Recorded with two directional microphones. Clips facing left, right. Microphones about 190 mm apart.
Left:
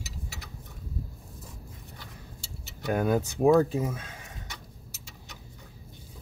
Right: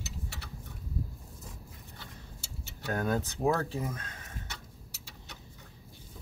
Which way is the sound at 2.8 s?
15° left (ahead or behind).